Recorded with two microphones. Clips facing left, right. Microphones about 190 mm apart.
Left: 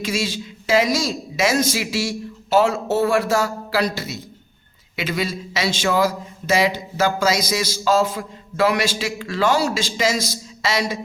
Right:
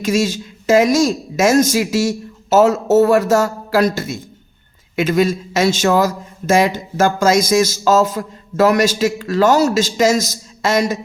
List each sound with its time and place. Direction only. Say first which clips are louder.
0.0 s a man's voice: right 7 dB; 45° right (ahead or behind)